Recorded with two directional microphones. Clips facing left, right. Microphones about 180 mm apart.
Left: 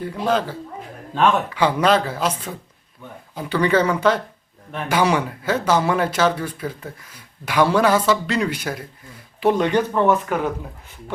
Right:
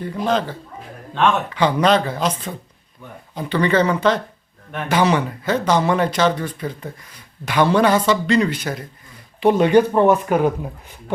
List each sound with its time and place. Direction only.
0.3 s speech: 10° left (ahead or behind)
9.4 s speech: 5° right (ahead or behind)